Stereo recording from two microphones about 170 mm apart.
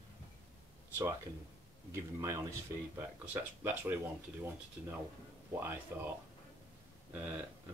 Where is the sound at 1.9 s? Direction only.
15° right (ahead or behind).